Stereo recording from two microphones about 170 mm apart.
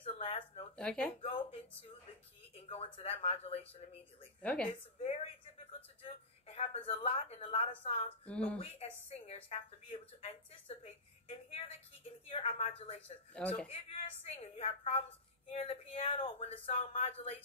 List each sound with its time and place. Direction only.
0.0 s a sound: 35° left (ahead or behind)
0.7 s speech: 5° left (ahead or behind)
1.2 s speech: 35° left (ahead or behind)
2.7 s speech: 35° left (ahead or behind)
4.4 s a woman's voice: 10° left (ahead or behind)
5.0 s a sound: 35° left (ahead or behind)
8.3 s a woman's voice: 5° left (ahead or behind)
8.5 s a woman's voice: 35° left (ahead or behind)